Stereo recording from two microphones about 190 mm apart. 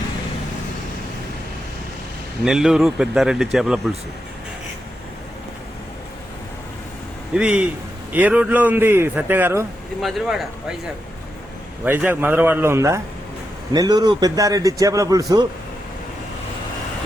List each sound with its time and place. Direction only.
2.4 s speech: 5° right (ahead or behind)
7.3 s a man's voice: 5° right (ahead or behind)
10.0 s speech: centre (ahead or behind)
11.9 s a man's voice: 10° right (ahead or behind)